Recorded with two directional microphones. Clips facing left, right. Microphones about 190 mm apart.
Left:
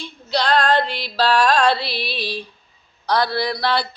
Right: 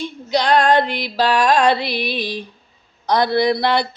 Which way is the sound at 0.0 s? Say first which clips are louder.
Right 3 dB; 15° right (ahead or behind).